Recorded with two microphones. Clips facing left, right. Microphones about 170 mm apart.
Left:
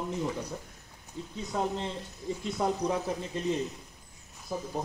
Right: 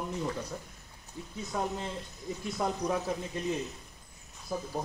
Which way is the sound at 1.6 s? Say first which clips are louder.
Left 2 dB; 20° left (ahead or behind).